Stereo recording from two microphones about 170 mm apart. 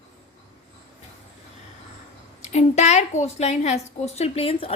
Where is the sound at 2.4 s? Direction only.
40° left (ahead or behind).